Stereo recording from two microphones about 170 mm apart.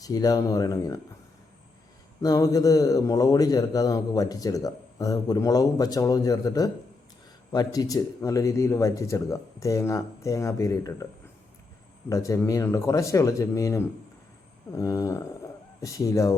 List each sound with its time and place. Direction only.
0.0 s a man's voice: 20° left (ahead or behind)
2.2 s a man's voice: 20° left (ahead or behind)
12.0 s a man's voice: 20° left (ahead or behind)